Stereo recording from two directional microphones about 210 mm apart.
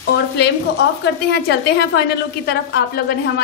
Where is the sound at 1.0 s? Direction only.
50° left (ahead or behind).